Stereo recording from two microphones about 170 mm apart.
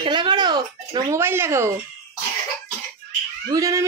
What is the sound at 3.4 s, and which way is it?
Speech, 20° right (ahead or behind).